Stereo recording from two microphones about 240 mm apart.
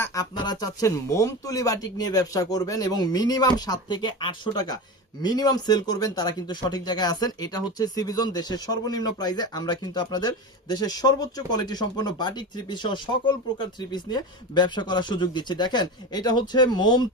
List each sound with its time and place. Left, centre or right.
0.0 s speech: centre